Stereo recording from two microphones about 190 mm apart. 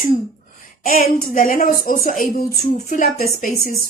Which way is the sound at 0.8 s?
45° left (ahead or behind).